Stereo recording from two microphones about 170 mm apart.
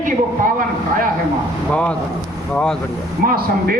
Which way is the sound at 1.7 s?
10° left (ahead or behind).